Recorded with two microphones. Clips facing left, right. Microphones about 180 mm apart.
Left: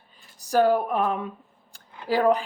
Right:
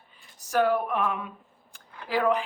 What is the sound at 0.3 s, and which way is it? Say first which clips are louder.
Speech: left 4 dB; 35° left (ahead or behind).